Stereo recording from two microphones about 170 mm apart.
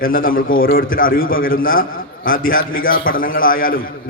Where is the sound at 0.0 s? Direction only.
55° left (ahead or behind).